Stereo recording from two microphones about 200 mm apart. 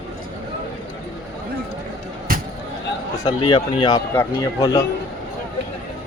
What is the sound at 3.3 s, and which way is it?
Speech, 25° left (ahead or behind).